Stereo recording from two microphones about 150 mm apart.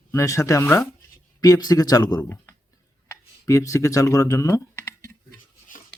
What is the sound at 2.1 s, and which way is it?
Speech, 15° left (ahead or behind).